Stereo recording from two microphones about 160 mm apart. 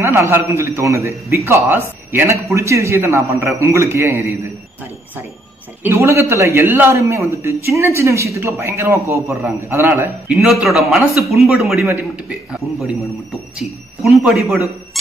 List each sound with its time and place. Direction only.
0.0 s a man's voice: 15° right (ahead or behind)
5.9 s a man's voice: 15° right (ahead or behind); by 14.7 s centre (ahead or behind)